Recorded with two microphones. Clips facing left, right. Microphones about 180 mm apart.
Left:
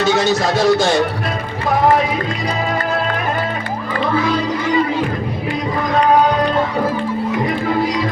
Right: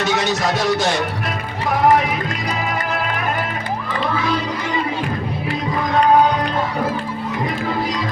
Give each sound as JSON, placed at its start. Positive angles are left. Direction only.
{"t": 0.0, "sound": "music", "side_deg": 30}